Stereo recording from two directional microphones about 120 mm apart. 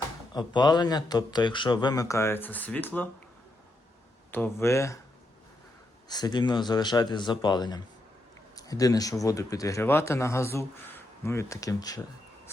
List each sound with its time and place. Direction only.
0.3 s speech: 35° left (ahead or behind); by 3.1 s 15° left (ahead or behind)
4.3 s speech: 20° left (ahead or behind)
6.1 s speech: 35° left (ahead or behind)